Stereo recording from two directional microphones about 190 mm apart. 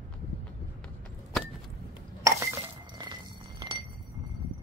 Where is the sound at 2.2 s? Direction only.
15° right (ahead or behind).